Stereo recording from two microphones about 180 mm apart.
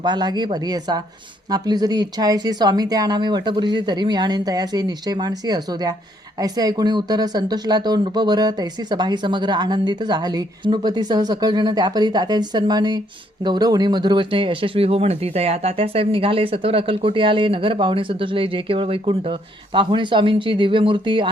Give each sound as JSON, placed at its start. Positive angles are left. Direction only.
{"t": 0.0, "sound": "speech", "side_deg": -25}